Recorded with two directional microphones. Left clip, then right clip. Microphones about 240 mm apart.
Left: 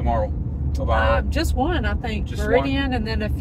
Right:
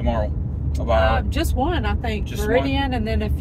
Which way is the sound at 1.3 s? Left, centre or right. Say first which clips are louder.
Even; centre.